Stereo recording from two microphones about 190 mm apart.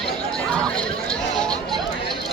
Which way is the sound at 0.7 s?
5° left (ahead or behind).